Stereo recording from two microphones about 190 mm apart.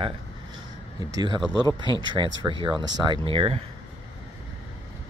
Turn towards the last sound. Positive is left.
turn(degrees=-30)  # may be behind; listen again after turning